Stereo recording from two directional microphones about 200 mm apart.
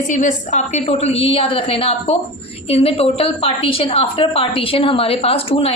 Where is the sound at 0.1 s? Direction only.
40° left (ahead or behind).